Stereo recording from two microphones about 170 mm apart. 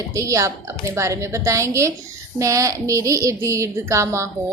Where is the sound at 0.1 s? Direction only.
20° right (ahead or behind).